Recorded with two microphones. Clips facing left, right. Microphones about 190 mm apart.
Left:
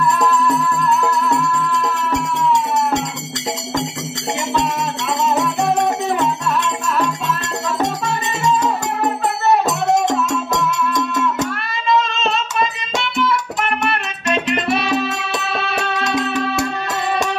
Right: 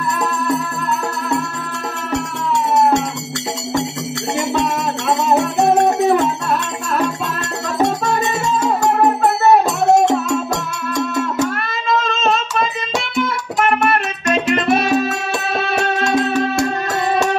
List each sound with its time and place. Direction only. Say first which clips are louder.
0.3 s music: left 3 dB; 45° right (ahead or behind)
4.6 s music: right 1 dB; 45° right (ahead or behind)
12.1 s hands: right 3 dB; 45° right (ahead or behind)
13.2 s music: right 2 dB; 45° right (ahead or behind)